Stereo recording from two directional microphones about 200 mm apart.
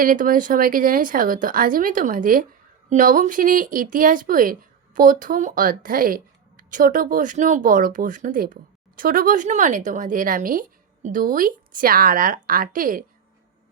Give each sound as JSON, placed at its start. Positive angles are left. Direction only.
{"t": 0.0, "sound": "a woman's voice", "side_deg": -45}